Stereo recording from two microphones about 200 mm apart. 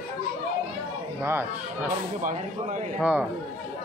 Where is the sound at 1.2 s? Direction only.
10° right (ahead or behind).